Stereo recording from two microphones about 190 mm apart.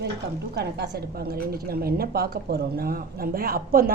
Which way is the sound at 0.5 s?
60° right (ahead or behind).